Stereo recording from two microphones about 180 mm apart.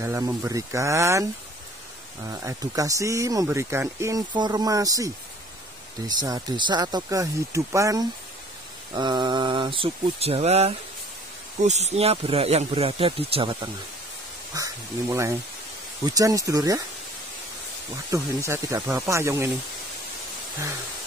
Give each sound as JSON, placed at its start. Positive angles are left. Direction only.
{"t": 0.0, "sound": "speech", "side_deg": -15}
{"t": 2.2, "sound": "speech", "side_deg": -20}
{"t": 14.5, "sound": "speech", "side_deg": -20}
{"t": 18.1, "sound": "speech", "side_deg": -15}